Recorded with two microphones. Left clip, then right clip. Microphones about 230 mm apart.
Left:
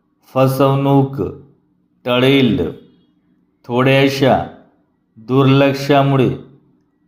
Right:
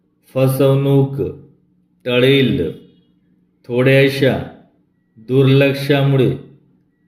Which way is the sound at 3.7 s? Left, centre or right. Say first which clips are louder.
Even; centre.